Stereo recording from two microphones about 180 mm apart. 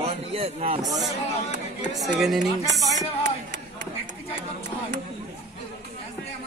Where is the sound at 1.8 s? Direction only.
Centre (ahead or behind).